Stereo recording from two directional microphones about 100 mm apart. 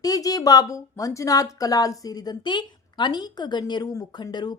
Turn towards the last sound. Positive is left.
turn(degrees=45)  # may be behind; listen again after turning